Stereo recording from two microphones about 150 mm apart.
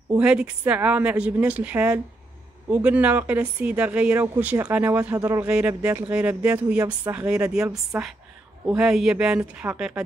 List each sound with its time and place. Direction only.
0.2 s speech: 5° right (ahead or behind)
5.4 s speech: 5° right (ahead or behind)